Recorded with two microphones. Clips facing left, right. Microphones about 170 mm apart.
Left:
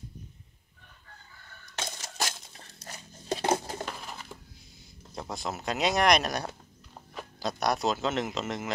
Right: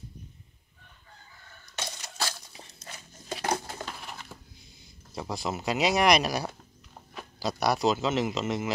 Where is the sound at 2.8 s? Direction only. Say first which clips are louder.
Left 4 dB; 30° left (ahead or behind).